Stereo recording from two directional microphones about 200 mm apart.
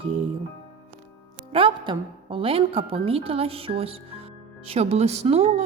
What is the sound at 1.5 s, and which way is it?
A woman's voice, 25° right (ahead or behind).